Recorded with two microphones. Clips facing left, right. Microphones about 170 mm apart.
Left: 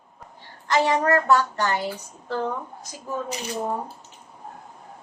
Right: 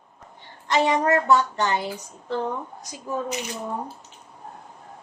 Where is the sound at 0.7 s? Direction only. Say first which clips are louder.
Even; 20° right (ahead or behind).